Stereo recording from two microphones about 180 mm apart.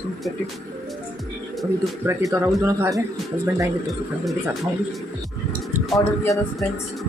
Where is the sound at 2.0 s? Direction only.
15° right (ahead or behind).